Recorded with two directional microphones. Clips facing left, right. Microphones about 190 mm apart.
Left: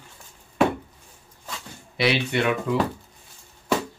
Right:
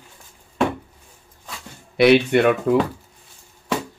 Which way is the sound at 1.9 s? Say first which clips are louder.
Right 9 dB; 55° right (ahead or behind).